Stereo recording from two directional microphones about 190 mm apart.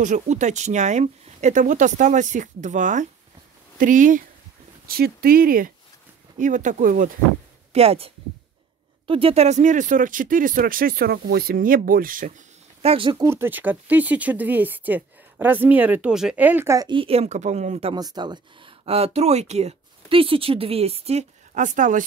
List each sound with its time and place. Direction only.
0.0 s speech: 40° right (ahead or behind)
7.7 s speech: 30° right (ahead or behind)
13.3 s speech: 10° right (ahead or behind); by 22.0 s 40° right (ahead or behind)